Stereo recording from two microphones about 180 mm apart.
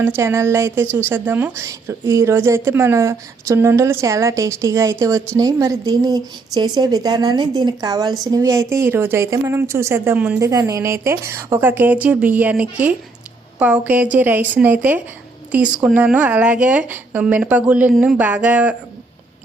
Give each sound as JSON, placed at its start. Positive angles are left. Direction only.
{"t": 0.2, "sound": "a woman's voice", "side_deg": -15}